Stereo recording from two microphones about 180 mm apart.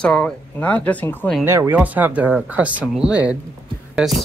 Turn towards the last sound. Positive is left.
turn(degrees=-5)  # may be behind; listen again after turning